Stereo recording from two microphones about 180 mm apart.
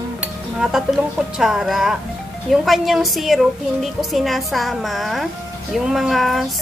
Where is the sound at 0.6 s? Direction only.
5° right (ahead or behind).